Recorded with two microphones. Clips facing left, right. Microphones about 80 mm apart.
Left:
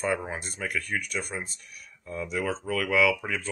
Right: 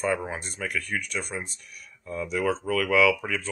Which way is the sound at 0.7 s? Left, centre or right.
Left.